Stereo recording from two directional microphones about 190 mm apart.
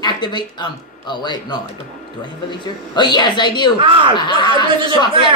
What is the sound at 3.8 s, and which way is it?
Speech, 25° right (ahead or behind).